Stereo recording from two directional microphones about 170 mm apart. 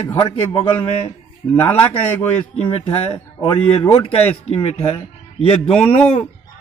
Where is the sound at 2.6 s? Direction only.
35° left (ahead or behind).